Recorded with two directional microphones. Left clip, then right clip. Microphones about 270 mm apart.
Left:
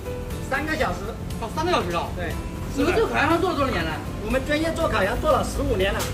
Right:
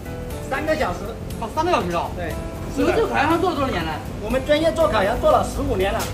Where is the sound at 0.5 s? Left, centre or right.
Centre.